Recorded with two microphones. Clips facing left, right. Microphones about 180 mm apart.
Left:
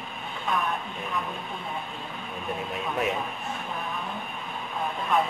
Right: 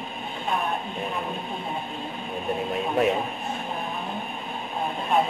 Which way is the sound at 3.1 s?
25° right (ahead or behind).